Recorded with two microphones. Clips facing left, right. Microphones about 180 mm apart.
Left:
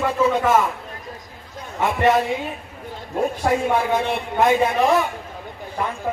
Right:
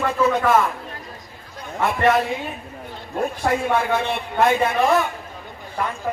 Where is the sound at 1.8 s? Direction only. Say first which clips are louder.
Left 1 dB; 15° left (ahead or behind).